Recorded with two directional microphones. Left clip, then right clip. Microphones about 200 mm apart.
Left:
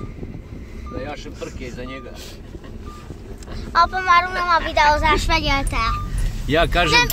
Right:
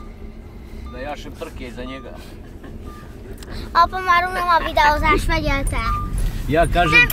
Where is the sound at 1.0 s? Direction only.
40° right (ahead or behind).